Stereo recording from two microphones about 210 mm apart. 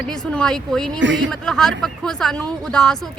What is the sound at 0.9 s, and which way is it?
Speech, 60° right (ahead or behind).